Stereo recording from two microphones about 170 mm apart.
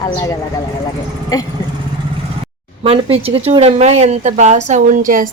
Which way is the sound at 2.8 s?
35° right (ahead or behind).